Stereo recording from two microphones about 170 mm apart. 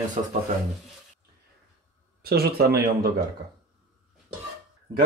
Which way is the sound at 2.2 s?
65° right (ahead or behind).